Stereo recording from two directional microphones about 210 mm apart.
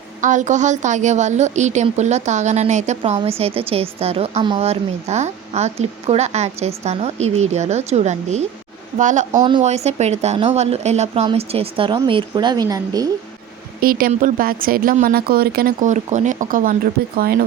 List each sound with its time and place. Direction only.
0.2 s a woman's voice: 35° right (ahead or behind)
9.3 s speech: 20° right (ahead or behind)
9.6 s speech: 30° right (ahead or behind)
13.8 s speech: 40° right (ahead or behind)